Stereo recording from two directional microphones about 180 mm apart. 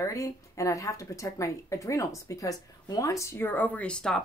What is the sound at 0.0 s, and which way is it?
Speech, 15° left (ahead or behind).